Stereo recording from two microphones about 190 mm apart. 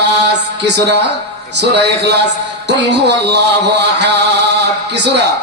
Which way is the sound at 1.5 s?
65° right (ahead or behind).